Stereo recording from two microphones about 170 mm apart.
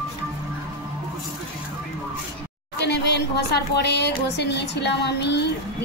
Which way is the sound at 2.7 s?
80° left.